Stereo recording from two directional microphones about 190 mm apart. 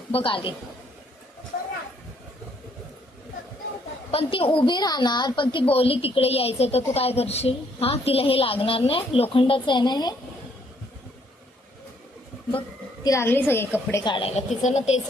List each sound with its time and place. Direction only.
0.1 s a woman's voice: 30° left (ahead or behind)
4.1 s a woman's voice: 30° left (ahead or behind)
13.1 s a woman's voice: 15° left (ahead or behind)
13.9 s a woman's voice: 25° left (ahead or behind)